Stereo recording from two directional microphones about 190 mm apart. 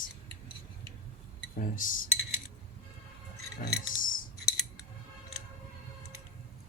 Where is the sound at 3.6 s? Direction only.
45° left (ahead or behind).